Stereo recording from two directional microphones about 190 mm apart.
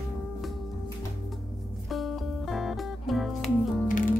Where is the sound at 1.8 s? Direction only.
Centre (ahead or behind).